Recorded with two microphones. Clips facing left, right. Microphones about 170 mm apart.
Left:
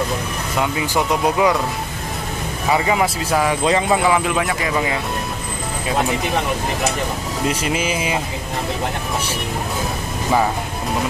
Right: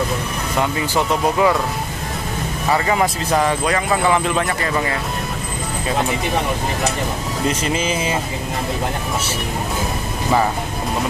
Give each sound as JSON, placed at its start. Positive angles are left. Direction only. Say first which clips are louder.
{"t": 0.6, "sound": "speech", "louder": "even", "side_deg": 10}
{"t": 2.7, "sound": "speech", "louder": "even", "side_deg": 10}
{"t": 3.6, "sound": "speech", "louder": "left 2 dB", "side_deg": 25}
{"t": 4.0, "sound": "speech", "louder": "even", "side_deg": 5}
{"t": 7.6, "sound": "speech", "louder": "right 1 dB", "side_deg": 10}